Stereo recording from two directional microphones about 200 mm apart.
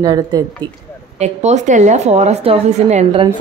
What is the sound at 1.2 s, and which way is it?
A woman's voice, 35° right (ahead or behind).